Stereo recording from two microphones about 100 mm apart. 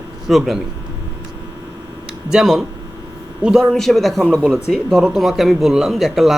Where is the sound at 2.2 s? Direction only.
5° right (ahead or behind).